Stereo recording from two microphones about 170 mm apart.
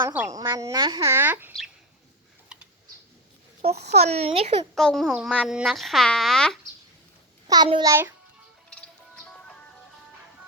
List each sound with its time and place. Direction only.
0.0 s speech: 10° right (ahead or behind)
2.5 s typing: 5° right (ahead or behind)
3.9 s speech: 35° right (ahead or behind)
4.7 s speech: centre (ahead or behind)
7.4 s a child's voice: 25° right (ahead or behind)
9.1 s music: 5° left (ahead or behind)